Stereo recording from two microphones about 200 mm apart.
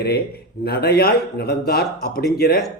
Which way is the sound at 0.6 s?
55° left (ahead or behind).